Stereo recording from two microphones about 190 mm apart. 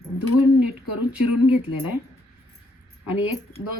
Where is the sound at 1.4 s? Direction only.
10° right (ahead or behind).